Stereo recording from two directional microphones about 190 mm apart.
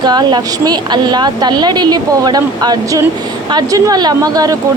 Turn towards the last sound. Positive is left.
turn(degrees=-20)  # may be behind; listen again after turning